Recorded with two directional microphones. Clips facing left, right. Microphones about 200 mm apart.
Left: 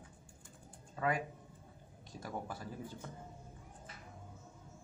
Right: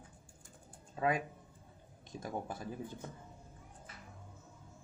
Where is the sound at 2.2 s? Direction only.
20° right (ahead or behind).